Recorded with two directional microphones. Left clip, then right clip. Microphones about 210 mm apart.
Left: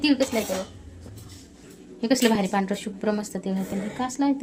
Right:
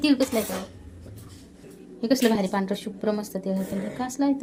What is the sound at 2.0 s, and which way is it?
A woman's voice, 15° left (ahead or behind).